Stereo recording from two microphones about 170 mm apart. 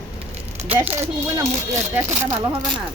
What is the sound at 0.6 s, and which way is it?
Speech, 10° right (ahead or behind).